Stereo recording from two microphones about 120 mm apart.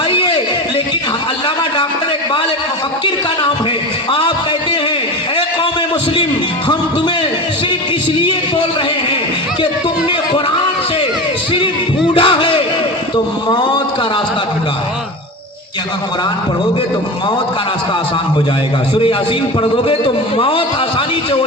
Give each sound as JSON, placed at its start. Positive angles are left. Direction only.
{"t": 12.1, "sound": "music", "side_deg": 45}
{"t": 13.1, "sound": "a sound", "side_deg": 40}
{"t": 19.7, "sound": "a man's voice", "side_deg": 45}